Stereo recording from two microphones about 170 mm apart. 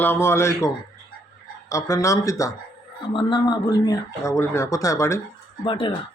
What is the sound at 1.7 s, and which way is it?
Speech, 20° left (ahead or behind).